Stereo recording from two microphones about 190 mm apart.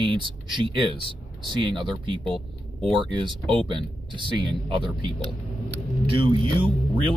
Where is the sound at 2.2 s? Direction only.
5° left (ahead or behind).